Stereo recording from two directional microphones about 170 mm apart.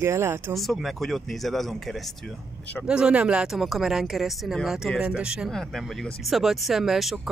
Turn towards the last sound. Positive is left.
turn(degrees=0)  # may be behind; listen again after turning